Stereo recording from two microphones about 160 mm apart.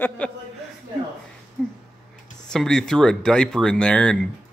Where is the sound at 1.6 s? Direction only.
5° left (ahead or behind).